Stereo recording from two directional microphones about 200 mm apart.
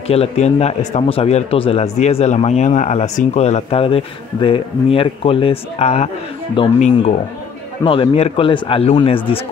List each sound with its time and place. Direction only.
0.1 s a man's voice: 30° left (ahead or behind)